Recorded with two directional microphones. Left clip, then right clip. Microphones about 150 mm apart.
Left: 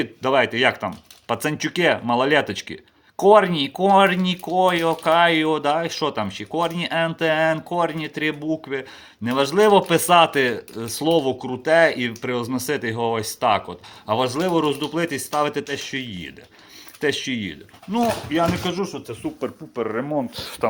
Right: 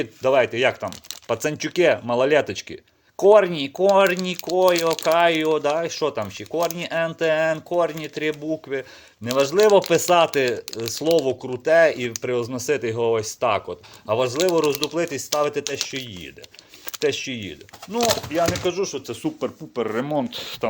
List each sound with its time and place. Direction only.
0.0 s speech: 40° right (ahead or behind)
18.6 s speech: 65° right (ahead or behind)
19.4 s speech: 30° right (ahead or behind)
20.3 s speech: 10° right (ahead or behind)